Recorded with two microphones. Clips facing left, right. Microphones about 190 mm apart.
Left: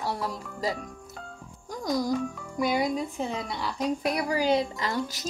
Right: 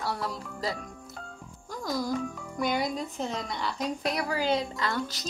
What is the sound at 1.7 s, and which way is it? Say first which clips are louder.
Music: left 3 dB; 20° left (ahead or behind).